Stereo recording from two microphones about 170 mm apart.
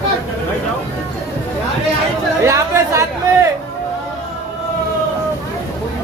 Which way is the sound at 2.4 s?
15° right (ahead or behind).